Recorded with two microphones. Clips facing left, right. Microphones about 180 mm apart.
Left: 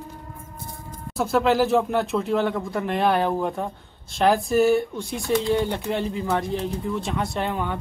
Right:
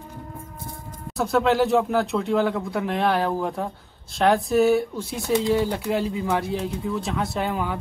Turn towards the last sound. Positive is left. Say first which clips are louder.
# even
turn(degrees=-5)  # may be behind; listen again after turning